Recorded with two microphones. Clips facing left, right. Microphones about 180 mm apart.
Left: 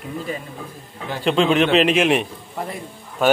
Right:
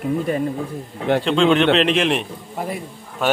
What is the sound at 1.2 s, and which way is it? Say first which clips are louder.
Speech: left 1 dB; 5° left (ahead or behind).